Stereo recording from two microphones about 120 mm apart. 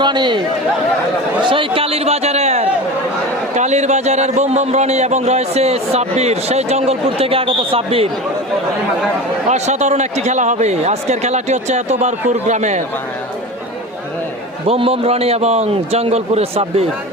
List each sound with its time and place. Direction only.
0.0 s a man's voice: 40° right (ahead or behind)
9.5 s speech: 70° right (ahead or behind)
14.7 s a man's voice: 55° right (ahead or behind)